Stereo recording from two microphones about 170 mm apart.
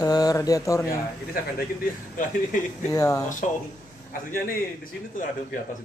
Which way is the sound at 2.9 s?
20° left (ahead or behind).